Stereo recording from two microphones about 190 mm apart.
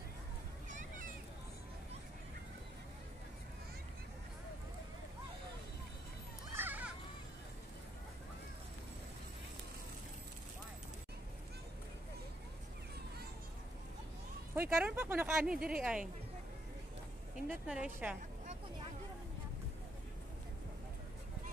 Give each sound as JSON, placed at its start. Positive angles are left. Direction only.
{"t": 0.7, "sound": "a sound", "side_deg": -45}
{"t": 6.5, "sound": "children playing", "side_deg": -10}
{"t": 14.5, "sound": "speech", "side_deg": -10}
{"t": 17.5, "sound": "speech", "side_deg": -5}